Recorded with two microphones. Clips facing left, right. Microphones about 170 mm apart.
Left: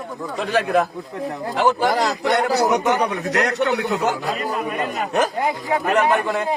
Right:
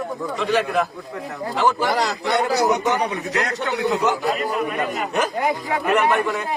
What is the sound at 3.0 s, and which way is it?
Speech, 75° left (ahead or behind).